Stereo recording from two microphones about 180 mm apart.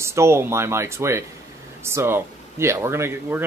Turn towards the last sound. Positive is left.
turn(degrees=-15)  # may be behind; listen again after turning